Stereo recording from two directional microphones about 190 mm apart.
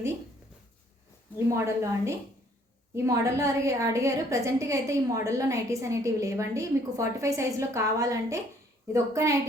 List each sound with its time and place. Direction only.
1.5 s a woman's voice: 15° right (ahead or behind)